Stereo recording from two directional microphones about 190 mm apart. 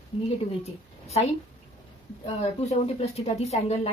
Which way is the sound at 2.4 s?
35° left (ahead or behind).